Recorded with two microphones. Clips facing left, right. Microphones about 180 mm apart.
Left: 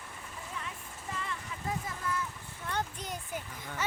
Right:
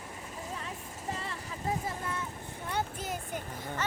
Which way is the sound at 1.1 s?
35° right (ahead or behind).